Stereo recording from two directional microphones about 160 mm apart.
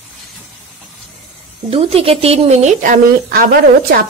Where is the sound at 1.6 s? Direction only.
35° right (ahead or behind).